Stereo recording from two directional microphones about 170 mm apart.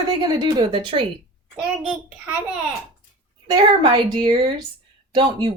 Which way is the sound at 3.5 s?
25° right (ahead or behind).